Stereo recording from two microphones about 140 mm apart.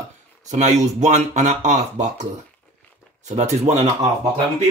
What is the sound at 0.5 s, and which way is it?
Speech, 55° right (ahead or behind).